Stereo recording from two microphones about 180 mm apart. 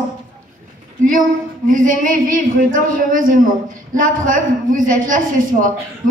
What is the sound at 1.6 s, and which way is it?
A man's voice, 50° right (ahead or behind).